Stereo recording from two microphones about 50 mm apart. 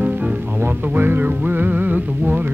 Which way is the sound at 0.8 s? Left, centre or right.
Right.